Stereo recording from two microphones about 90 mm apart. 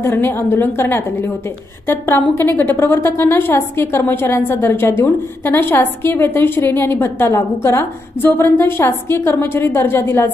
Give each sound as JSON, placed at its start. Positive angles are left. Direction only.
{"t": 0.0, "sound": "a woman's voice", "side_deg": 25}